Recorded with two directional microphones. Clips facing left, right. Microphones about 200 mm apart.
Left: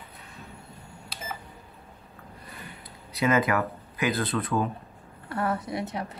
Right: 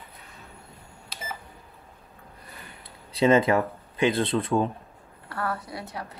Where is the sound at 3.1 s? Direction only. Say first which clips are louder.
Right 4 dB; 30° right (ahead or behind).